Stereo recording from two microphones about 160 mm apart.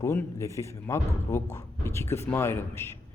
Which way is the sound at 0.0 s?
15° left (ahead or behind).